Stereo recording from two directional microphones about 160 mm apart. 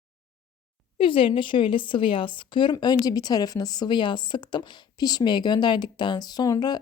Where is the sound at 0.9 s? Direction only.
35° left (ahead or behind).